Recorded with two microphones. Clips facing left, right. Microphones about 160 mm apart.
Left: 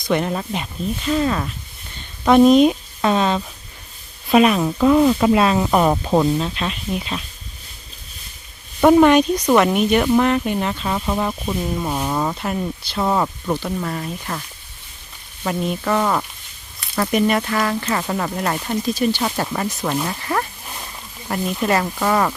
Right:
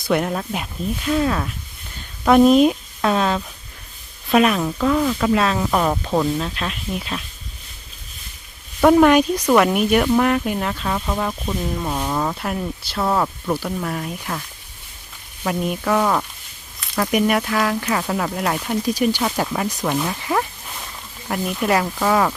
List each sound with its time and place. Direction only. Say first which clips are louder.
0.0 s speech: even; 5° right (ahead or behind)
4.8 s speech: left 6 dB; 20° left (ahead or behind)
5.3 s speech: left 3 dB; 10° left (ahead or behind)
6.4 s speech: left 2 dB; centre (ahead or behind)
8.8 s speech: left 1 dB; centre (ahead or behind)
15.4 s speech: even; 5° right (ahead or behind)
16.8 s a sound: even; centre (ahead or behind)
17.1 s speech: even; 10° right (ahead or behind)
18.9 s speech: even; 10° right (ahead or behind)
20.1 s speech: right 1 dB; 15° right (ahead or behind)
21.2 s speech: even; centre (ahead or behind)